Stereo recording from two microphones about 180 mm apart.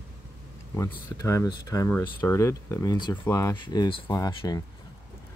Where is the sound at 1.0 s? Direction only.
15° left (ahead or behind).